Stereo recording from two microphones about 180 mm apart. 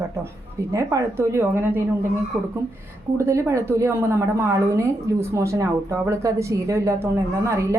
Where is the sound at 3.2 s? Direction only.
15° right (ahead or behind).